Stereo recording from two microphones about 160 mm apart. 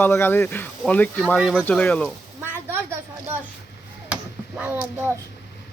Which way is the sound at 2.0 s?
15° right (ahead or behind).